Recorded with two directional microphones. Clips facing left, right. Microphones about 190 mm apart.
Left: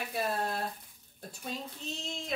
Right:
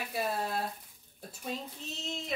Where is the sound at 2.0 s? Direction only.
5° right (ahead or behind).